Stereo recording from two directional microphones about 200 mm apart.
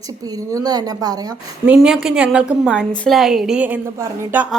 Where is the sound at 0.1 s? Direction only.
20° right (ahead or behind).